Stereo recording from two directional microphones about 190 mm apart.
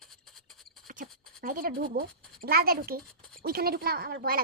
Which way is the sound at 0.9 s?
50° right (ahead or behind).